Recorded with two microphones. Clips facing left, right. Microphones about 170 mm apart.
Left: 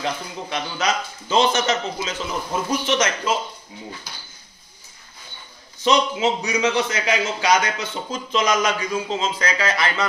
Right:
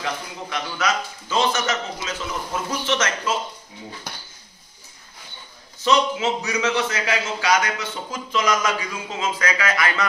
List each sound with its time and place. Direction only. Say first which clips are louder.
0.0 s a man's voice: left 2 dB; 25° left (ahead or behind)
5.9 s a man's voice: left 1 dB; 15° left (ahead or behind)